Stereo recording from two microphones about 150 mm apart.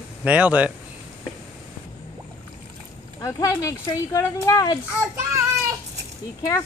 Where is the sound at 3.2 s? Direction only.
20° left (ahead or behind).